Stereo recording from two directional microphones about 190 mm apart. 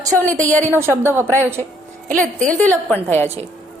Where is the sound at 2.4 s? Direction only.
5° left (ahead or behind).